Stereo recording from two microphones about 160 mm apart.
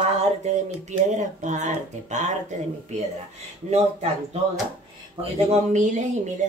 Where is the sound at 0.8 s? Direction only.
50° right (ahead or behind).